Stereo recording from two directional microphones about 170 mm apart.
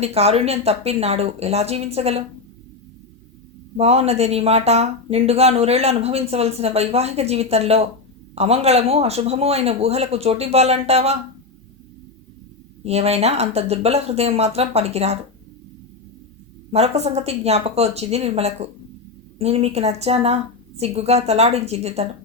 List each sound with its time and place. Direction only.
0.0 s speech: 35° right (ahead or behind)
3.8 s speech: 40° right (ahead or behind)
12.8 s speech: 40° right (ahead or behind)
16.7 s speech: 40° right (ahead or behind)